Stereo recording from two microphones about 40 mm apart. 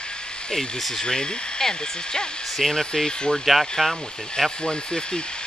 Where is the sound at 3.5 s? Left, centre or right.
Centre.